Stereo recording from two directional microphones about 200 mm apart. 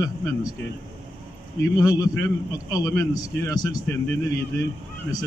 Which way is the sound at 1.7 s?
15° left (ahead or behind).